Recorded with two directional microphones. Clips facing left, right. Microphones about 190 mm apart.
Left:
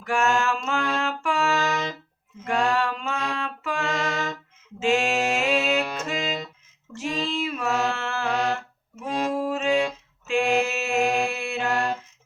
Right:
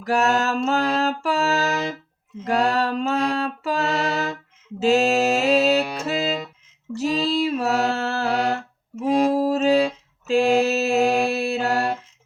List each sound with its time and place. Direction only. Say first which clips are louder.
0.0 s mantra: right 3 dB; 40° right (ahead or behind)
6.0 s music: right 5 dB; 35° right (ahead or behind)
6.9 s mantra: right 6 dB; 35° right (ahead or behind)
9.0 s a sound: right 7 dB; 35° right (ahead or behind)